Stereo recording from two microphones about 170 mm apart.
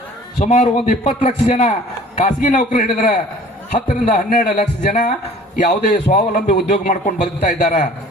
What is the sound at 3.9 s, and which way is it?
A man's voice, 55° left (ahead or behind).